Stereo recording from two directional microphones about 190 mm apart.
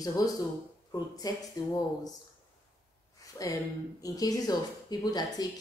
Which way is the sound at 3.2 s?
20° left (ahead or behind).